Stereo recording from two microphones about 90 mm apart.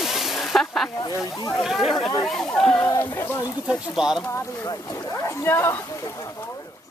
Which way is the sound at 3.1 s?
25° left (ahead or behind).